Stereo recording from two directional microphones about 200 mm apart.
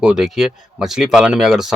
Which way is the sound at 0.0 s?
Centre (ahead or behind).